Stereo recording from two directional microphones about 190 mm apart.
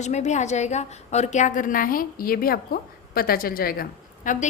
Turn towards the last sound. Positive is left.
turn(degrees=45)  # may be behind; listen again after turning